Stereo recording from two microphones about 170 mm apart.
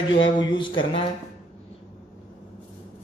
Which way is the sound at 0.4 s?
30° left (ahead or behind).